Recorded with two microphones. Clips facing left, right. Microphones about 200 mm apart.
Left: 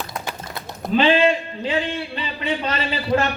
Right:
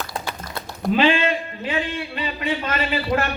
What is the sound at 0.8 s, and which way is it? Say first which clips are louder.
Speech: left 2 dB; 30° left (ahead or behind).